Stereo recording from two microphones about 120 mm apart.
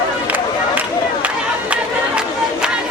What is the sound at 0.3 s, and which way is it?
Run, 15° right (ahead or behind).